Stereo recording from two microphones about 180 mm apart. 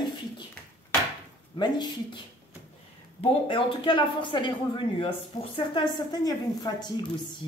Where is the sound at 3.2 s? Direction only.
30° left (ahead or behind).